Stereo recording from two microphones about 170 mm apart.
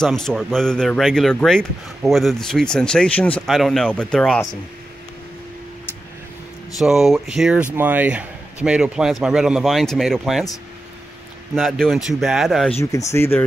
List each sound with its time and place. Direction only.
0.0 s speech: 5° left (ahead or behind)
6.8 s a man's voice: centre (ahead or behind)
11.5 s speech: centre (ahead or behind)
12.9 s speech: 15° left (ahead or behind)